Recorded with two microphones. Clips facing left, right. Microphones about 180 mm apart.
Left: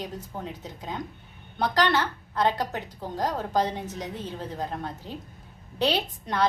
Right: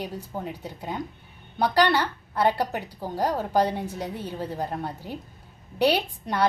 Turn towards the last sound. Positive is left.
turn(degrees=-10)  # may be behind; listen again after turning